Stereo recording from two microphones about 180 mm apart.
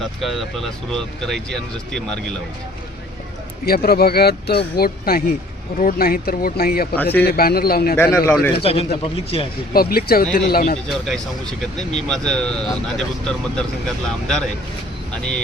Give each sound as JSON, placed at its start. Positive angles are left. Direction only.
{"t": 0.0, "sound": "speech", "side_deg": 0}
{"t": 3.7, "sound": "speech", "side_deg": 60}
{"t": 6.9, "sound": "speech", "side_deg": 10}
{"t": 7.3, "sound": "speech", "side_deg": 60}
{"t": 7.9, "sound": "speech", "side_deg": 15}
{"t": 8.6, "sound": "speech", "side_deg": 30}
{"t": 9.7, "sound": "speech", "side_deg": 55}
{"t": 10.8, "sound": "speech", "side_deg": 0}